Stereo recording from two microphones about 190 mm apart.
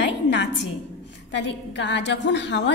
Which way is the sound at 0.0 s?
65° left (ahead or behind).